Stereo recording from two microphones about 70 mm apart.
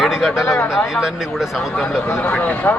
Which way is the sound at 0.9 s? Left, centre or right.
Centre.